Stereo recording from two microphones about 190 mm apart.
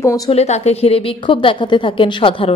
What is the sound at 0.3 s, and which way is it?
A woman's voice, 35° left (ahead or behind).